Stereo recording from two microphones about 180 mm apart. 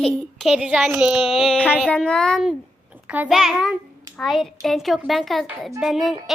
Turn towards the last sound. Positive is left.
turn(degrees=0)  # may be behind; listen again after turning